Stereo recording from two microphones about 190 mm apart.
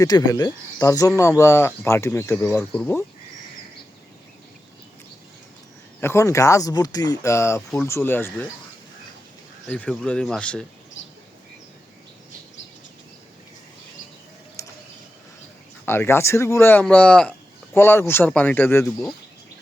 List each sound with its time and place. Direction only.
0.0 s speech: 20° left (ahead or behind)
6.0 s speech: 15° left (ahead or behind)
9.6 s speech: 5° left (ahead or behind)
14.6 s a sound: 15° left (ahead or behind)
15.9 s speech: 15° left (ahead or behind)